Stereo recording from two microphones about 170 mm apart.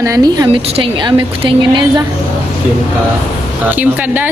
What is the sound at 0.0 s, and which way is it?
A woman's voice, 20° right (ahead or behind).